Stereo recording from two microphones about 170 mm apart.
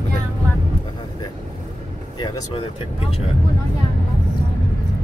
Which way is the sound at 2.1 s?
25° left (ahead or behind).